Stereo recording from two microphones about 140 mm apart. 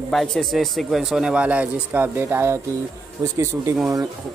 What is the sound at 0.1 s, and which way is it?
Speech, 5° left (ahead or behind).